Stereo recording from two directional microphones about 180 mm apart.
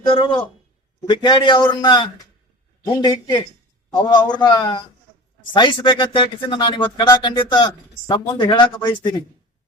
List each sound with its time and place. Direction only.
0.1 s speech: 30° left (ahead or behind)